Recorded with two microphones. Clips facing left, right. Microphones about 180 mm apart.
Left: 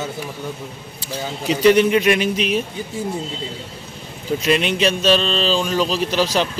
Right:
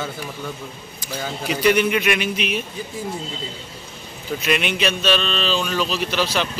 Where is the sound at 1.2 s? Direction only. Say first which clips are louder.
Left 3 dB; 15° left (ahead or behind).